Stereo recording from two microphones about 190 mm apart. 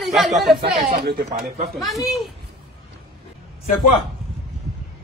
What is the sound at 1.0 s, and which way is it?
Speech, 60° right (ahead or behind).